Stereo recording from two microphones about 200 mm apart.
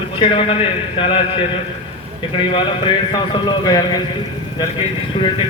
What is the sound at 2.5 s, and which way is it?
A man's voice, 25° left (ahead or behind).